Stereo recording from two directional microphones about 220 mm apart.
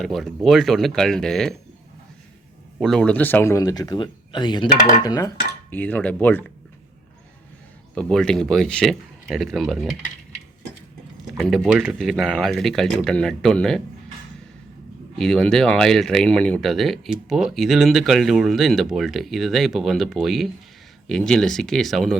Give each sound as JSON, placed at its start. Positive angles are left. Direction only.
{"t": 0.0, "sound": "speech", "side_deg": 0}
{"t": 2.7, "sound": "speech", "side_deg": 0}
{"t": 7.9, "sound": "speech", "side_deg": 5}
{"t": 11.3, "sound": "speech", "side_deg": 0}
{"t": 15.2, "sound": "speech", "side_deg": 5}